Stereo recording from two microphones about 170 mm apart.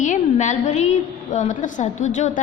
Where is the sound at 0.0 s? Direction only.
45° left (ahead or behind).